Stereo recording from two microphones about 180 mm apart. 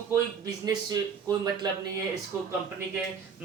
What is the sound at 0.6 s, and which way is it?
Speech, 20° right (ahead or behind).